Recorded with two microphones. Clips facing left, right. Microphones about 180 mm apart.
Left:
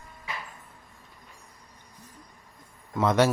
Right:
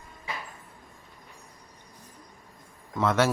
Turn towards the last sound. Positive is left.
turn(degrees=15)  # may be behind; listen again after turning